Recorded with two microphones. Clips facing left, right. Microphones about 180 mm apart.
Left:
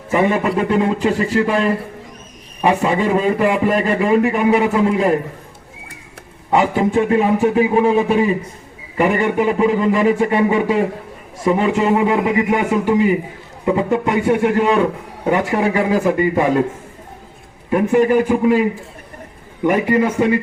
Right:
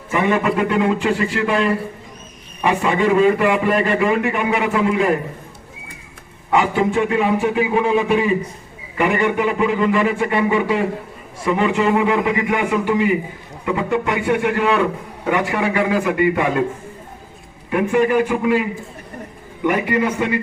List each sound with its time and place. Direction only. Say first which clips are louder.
0.1 s a man's voice: left 2 dB; 40° left (ahead or behind)
6.5 s a man's voice: left 2 dB; 40° left (ahead or behind)
17.7 s a man's voice: left 3 dB; 35° left (ahead or behind)
19.6 s a man's voice: left 3 dB; 40° left (ahead or behind)